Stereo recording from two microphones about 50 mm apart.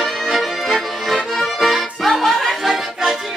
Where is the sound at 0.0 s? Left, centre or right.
Centre.